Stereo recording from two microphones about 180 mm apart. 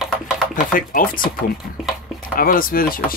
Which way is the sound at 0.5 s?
50° left (ahead or behind).